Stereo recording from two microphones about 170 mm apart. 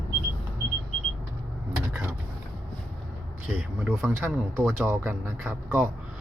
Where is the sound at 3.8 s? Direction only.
5° right (ahead or behind).